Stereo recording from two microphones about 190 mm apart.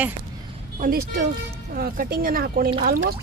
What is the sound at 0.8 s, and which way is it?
Speech, 50° right (ahead or behind).